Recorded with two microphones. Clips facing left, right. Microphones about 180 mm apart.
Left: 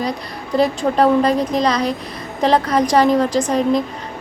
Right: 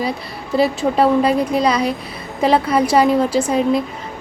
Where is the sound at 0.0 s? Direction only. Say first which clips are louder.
Even; 5° right (ahead or behind).